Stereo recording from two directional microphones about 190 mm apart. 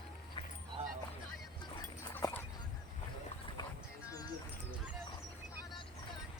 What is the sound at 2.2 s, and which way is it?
Dog, 20° left (ahead or behind).